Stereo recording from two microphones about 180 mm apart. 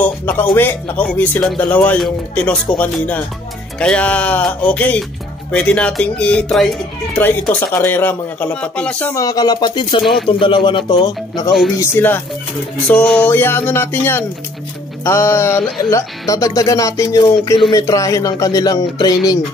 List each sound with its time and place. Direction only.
0.0 s speech: 10° left (ahead or behind)